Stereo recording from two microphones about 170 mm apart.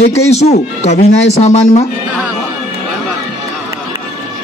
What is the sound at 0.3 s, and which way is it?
Speech, 40° left (ahead or behind).